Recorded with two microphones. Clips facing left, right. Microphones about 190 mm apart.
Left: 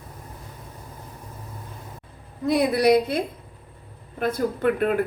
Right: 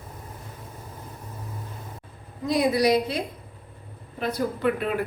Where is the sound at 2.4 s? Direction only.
55° left (ahead or behind).